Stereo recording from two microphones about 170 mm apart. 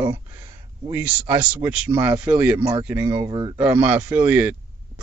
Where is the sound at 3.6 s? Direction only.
10° right (ahead or behind).